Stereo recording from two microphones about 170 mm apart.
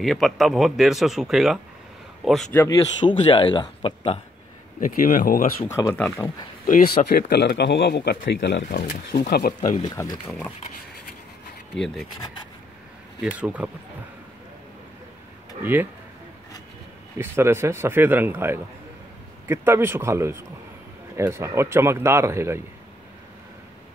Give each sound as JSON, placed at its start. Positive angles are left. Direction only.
{"t": 0.0, "sound": "speech", "side_deg": 0}
{"t": 3.1, "sound": "speech", "side_deg": 30}
{"t": 4.7, "sound": "speech", "side_deg": 50}
{"t": 5.7, "sound": "speech", "side_deg": 15}
{"t": 6.6, "sound": "a man's voice", "side_deg": 55}
{"t": 8.3, "sound": "speech", "side_deg": 90}
{"t": 8.7, "sound": "a man's voice", "side_deg": 70}
{"t": 9.8, "sound": "speech", "side_deg": 25}
{"t": 11.7, "sound": "speech", "side_deg": 0}
{"t": 13.2, "sound": "speech", "side_deg": -10}
{"t": 15.6, "sound": "speech", "side_deg": -10}
{"t": 17.2, "sound": "speech", "side_deg": -15}